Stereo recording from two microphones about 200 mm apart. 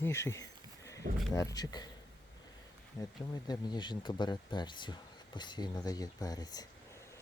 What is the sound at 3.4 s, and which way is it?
Speech, 20° left (ahead or behind).